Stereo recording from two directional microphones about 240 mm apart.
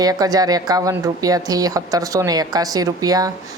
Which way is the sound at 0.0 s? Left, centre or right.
Centre.